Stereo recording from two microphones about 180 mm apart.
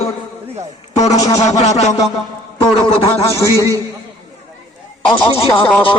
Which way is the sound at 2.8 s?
25° left (ahead or behind).